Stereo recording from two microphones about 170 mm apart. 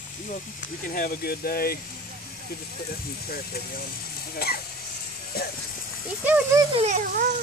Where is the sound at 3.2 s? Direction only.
65° left (ahead or behind).